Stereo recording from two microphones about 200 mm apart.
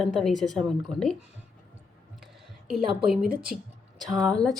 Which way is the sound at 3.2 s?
45° right (ahead or behind).